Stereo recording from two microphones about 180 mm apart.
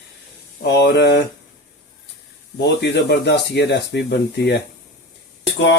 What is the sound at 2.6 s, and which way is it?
Speech, 70° left (ahead or behind).